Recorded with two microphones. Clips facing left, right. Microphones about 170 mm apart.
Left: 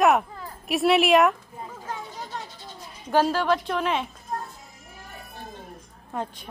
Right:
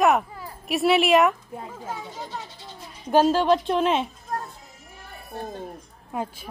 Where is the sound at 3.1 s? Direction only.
20° right (ahead or behind).